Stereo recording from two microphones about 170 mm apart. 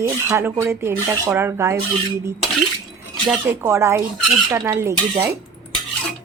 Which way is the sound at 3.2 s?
15° right (ahead or behind).